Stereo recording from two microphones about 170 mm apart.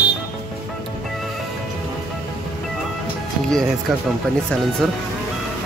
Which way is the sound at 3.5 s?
5° left (ahead or behind).